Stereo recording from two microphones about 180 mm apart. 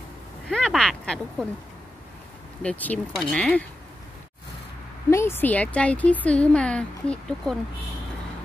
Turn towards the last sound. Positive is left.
turn(degrees=5)  # may be behind; listen again after turning